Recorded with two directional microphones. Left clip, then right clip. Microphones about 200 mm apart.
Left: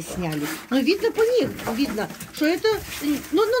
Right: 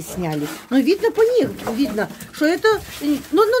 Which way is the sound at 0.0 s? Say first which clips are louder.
Right 3 dB; 45° right (ahead or behind).